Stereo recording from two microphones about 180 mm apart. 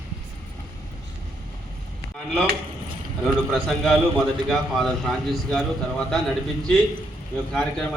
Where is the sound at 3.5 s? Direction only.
Centre (ahead or behind).